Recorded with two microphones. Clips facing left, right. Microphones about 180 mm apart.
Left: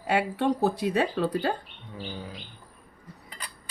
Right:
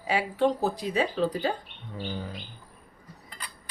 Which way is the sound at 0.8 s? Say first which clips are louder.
Left 1 dB; 65° left (ahead or behind).